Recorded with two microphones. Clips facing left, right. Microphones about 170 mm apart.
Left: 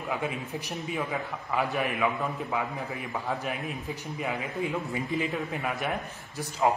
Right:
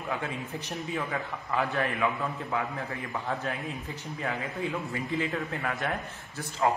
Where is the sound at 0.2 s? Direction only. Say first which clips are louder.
Left 2 dB; 15° left (ahead or behind).